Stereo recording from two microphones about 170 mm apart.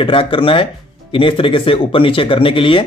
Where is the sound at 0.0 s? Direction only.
30° left (ahead or behind).